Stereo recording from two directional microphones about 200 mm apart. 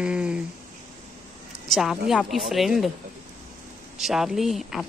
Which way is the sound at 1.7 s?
Centre (ahead or behind).